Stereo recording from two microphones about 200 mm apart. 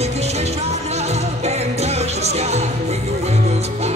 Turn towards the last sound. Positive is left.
turn(degrees=-35)  # may be behind; listen again after turning